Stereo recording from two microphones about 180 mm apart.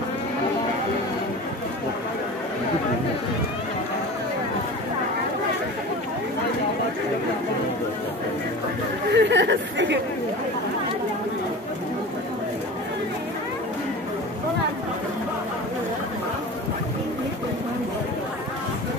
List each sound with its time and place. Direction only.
9.1 s chatter: 75° right (ahead or behind)